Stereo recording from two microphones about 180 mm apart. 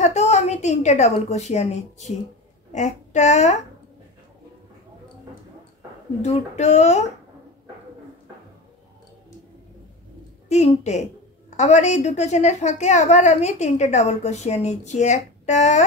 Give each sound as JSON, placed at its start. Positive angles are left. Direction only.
{"t": 0.0, "sound": "a woman's voice", "side_deg": 40}
{"t": 6.2, "sound": "a woman's voice", "side_deg": 40}
{"t": 10.5, "sound": "a woman's voice", "side_deg": 40}